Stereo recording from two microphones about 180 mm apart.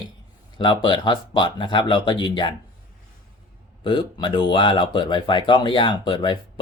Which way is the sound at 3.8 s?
25° left (ahead or behind).